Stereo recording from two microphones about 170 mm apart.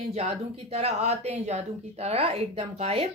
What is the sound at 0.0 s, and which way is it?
Speech, 35° right (ahead or behind).